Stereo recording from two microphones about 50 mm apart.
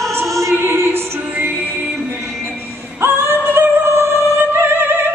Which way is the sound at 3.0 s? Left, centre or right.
Right.